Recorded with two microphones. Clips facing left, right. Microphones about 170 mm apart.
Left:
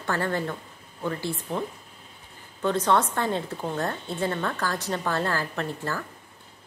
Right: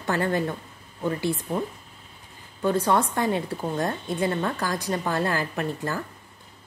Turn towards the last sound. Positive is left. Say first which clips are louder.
# right 2 dB
turn(degrees=-15)  # may be behind; listen again after turning